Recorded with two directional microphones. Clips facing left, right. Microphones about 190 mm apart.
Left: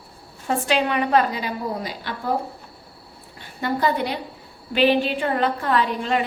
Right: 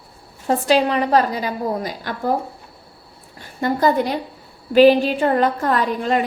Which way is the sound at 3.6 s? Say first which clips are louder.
Right 5 dB; 45° right (ahead or behind).